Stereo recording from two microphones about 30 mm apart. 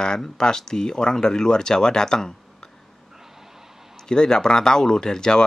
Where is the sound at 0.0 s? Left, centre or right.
Left.